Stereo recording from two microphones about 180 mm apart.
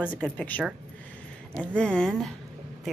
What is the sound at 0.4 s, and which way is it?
A woman's voice, 10° left (ahead or behind).